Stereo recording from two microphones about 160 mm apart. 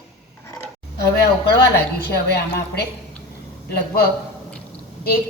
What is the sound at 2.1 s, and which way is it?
Speech, 90° left.